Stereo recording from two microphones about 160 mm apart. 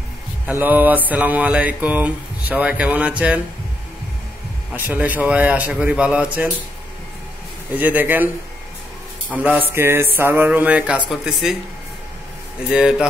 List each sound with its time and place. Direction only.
0.5 s mantra: 10° right (ahead or behind)
4.7 s mantra: 10° right (ahead or behind)
7.7 s mantra: 10° right (ahead or behind)
9.4 s mantra: 10° right (ahead or behind)
11.1 s speech: centre (ahead or behind)
12.7 s speech: 5° right (ahead or behind)